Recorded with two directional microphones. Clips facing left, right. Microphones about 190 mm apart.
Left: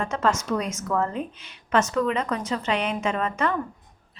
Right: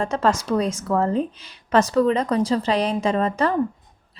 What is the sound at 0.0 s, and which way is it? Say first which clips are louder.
A woman's voice: right 3 dB; 35° right (ahead or behind).